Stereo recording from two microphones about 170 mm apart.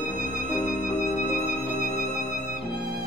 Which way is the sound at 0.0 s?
45° left (ahead or behind).